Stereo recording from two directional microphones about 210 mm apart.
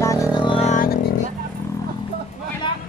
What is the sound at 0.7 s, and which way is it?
Music, 45° left (ahead or behind).